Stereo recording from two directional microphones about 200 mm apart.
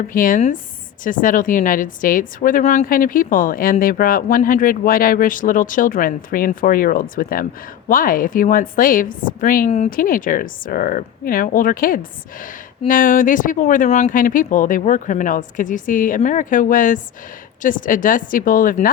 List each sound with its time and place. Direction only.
0.1 s speech: 45° left (ahead or behind)